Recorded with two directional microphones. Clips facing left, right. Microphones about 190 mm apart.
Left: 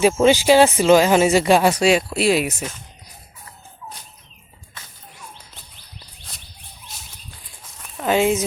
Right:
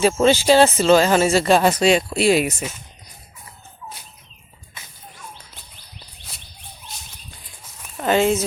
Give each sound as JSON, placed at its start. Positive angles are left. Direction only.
{"t": 0.0, "sound": "speech", "side_deg": 15}
{"t": 7.8, "sound": "a sound", "side_deg": 0}
{"t": 8.1, "sound": "speech", "side_deg": 10}